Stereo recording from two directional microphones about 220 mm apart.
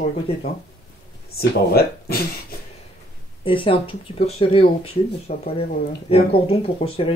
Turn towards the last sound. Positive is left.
turn(degrees=25)  # may be behind; listen again after turning